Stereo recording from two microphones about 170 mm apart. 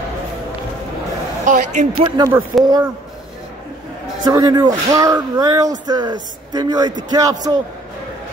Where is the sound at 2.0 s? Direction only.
25° right (ahead or behind).